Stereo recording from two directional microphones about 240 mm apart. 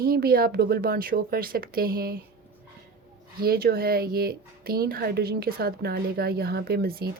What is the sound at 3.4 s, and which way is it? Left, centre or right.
Speech, right.